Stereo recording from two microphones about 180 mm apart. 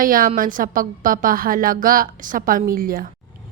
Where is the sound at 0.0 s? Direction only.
50° right (ahead or behind).